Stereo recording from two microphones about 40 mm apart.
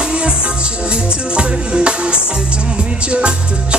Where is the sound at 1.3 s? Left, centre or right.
Right.